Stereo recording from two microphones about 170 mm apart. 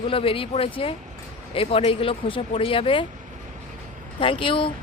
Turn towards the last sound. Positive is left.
turn(degrees=30)  # may be behind; listen again after turning